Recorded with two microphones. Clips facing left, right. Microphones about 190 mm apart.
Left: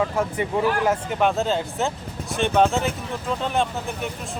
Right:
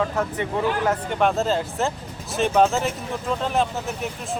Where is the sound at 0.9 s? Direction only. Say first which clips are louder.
Even; centre (ahead or behind).